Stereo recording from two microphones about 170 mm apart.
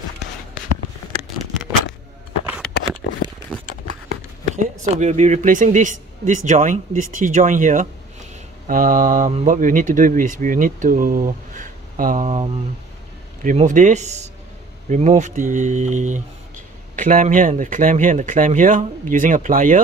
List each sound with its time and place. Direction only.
2.4 s a sound: 5° right (ahead or behind)
4.6 s speech: 45° right (ahead or behind)
13.4 s speech: 50° right (ahead or behind)